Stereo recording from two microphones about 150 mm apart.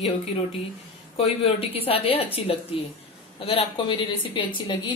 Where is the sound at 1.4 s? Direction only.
40° left (ahead or behind).